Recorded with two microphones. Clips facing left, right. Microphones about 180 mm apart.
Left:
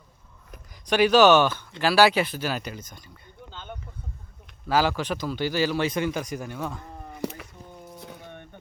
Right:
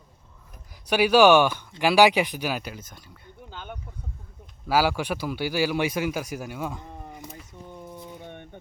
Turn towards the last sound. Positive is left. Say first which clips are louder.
# left 9 dB
turn(degrees=75)  # may be behind; listen again after turning